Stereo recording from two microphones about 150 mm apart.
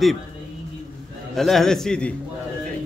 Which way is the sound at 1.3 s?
Centre (ahead or behind).